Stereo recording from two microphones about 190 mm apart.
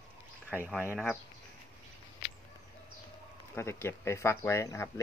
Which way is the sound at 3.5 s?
15° left (ahead or behind).